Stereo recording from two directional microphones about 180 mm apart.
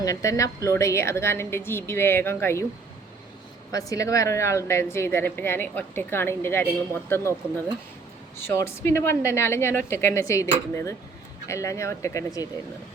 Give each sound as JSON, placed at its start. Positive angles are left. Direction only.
{"t": 0.0, "sound": "a woman's voice", "side_deg": 15}
{"t": 3.7, "sound": "a woman's voice", "side_deg": 20}
{"t": 8.4, "sound": "a woman's voice", "side_deg": 15}